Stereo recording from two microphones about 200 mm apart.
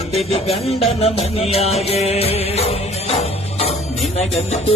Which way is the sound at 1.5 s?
30° left (ahead or behind).